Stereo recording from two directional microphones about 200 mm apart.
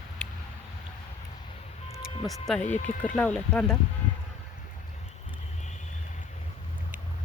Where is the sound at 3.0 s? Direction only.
5° left (ahead or behind).